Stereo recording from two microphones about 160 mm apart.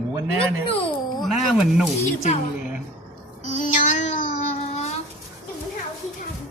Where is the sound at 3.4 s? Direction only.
50° left (ahead or behind).